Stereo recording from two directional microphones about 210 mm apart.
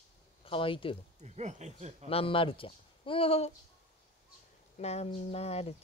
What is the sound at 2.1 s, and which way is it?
Speech, 25° left (ahead or behind).